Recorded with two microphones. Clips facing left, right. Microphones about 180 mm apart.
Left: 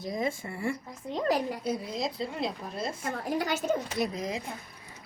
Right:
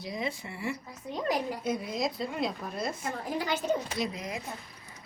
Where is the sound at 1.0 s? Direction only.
30° left (ahead or behind).